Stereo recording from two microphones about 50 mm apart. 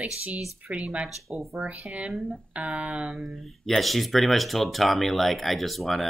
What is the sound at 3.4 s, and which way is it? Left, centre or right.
Speech, centre.